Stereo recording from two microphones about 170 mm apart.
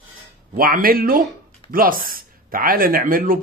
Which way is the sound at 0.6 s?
60° right (ahead or behind).